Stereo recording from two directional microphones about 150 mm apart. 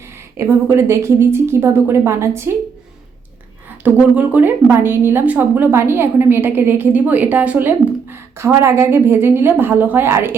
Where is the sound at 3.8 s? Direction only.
10° right (ahead or behind).